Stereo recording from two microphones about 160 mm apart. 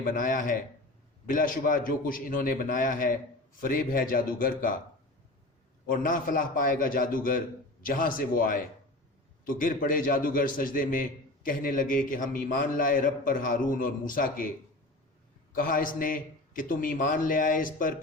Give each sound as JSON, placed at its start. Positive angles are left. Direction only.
{"t": 0.0, "sound": "a man's voice", "side_deg": 55}
{"t": 5.8, "sound": "a man's voice", "side_deg": 60}
{"t": 15.5, "sound": "a man's voice", "side_deg": 60}